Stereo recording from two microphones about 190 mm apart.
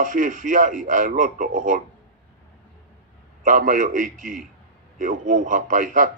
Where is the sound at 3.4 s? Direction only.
45° right (ahead or behind).